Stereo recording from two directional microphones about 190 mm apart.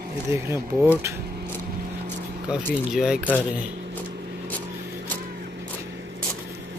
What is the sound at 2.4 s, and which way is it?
Speech, 5° right (ahead or behind).